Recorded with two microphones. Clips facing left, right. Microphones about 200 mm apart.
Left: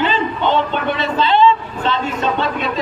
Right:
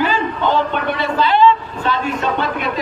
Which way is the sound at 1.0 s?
25° left (ahead or behind).